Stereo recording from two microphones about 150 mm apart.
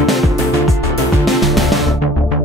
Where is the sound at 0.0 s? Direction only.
Centre (ahead or behind).